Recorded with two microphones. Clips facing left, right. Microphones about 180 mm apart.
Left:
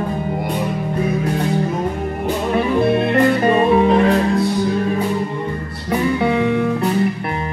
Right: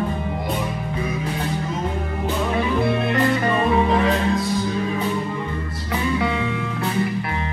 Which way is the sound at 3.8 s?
60° left (ahead or behind).